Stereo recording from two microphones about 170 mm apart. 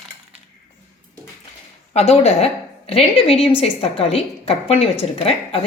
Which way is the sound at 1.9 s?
40° left (ahead or behind).